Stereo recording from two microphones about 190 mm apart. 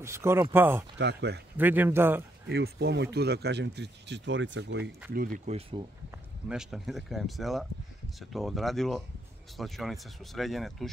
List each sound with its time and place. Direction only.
0.0 s speech: 15° right (ahead or behind)
0.9 s speech: 65° right (ahead or behind)
1.6 s speech: 10° right (ahead or behind)
2.5 s speech: 60° right (ahead or behind)
5.1 s speech: 45° right (ahead or behind)
6.5 s speech: centre (ahead or behind)